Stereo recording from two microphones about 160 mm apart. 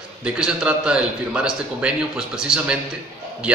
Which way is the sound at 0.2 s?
5° right (ahead or behind).